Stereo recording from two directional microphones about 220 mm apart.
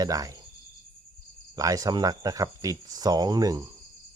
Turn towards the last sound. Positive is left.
turn(degrees=-15)  # may be behind; listen again after turning